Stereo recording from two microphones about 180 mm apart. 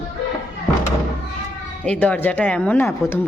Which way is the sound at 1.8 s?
5° left (ahead or behind).